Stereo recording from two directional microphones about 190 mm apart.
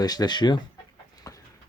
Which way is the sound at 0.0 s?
20° left (ahead or behind).